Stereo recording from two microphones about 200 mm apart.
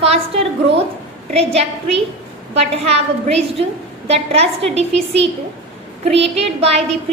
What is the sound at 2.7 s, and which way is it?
A woman's voice, 30° right (ahead or behind).